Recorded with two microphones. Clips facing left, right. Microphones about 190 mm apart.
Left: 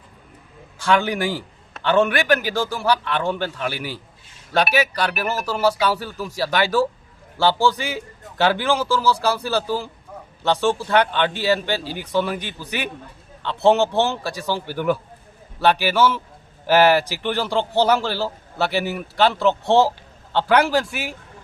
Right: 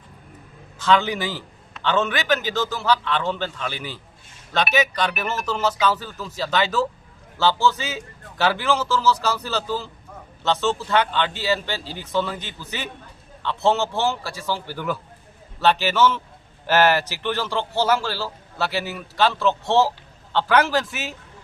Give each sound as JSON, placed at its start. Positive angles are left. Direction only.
{"t": 0.8, "sound": "a man's voice", "side_deg": 10}